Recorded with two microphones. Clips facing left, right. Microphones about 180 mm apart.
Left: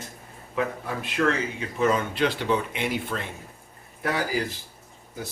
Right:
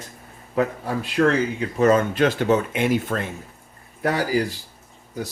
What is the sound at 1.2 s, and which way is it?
Speech, 45° right (ahead or behind).